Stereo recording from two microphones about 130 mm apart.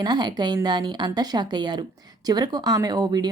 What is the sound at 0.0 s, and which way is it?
Speech, 35° right (ahead or behind).